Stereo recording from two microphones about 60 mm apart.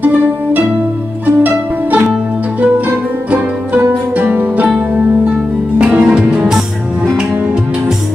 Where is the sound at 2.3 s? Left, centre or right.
Right.